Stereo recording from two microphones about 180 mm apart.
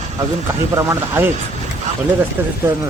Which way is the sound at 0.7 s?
10° right (ahead or behind).